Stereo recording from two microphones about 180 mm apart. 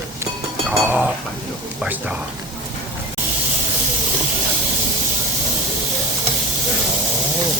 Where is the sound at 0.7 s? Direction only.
5° right (ahead or behind).